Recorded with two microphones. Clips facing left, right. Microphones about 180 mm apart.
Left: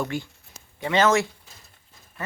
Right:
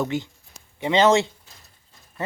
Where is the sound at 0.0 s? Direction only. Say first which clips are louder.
Right 3 dB; 20° right (ahead or behind).